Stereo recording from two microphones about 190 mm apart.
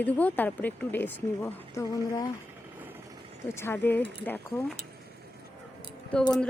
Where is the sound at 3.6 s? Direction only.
10° left (ahead or behind).